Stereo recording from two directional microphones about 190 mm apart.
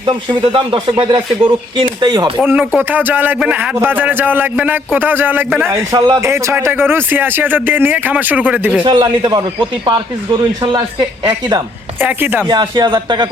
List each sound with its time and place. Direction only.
0.0 s speech: 25° right (ahead or behind)
2.4 s a man's voice: 5° right (ahead or behind)
8.8 s speech: 25° right (ahead or behind)
11.9 s a man's voice: 10° right (ahead or behind)
12.5 s speech: 25° right (ahead or behind)